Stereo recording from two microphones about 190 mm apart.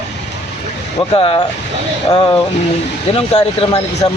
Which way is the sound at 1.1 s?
30° left (ahead or behind).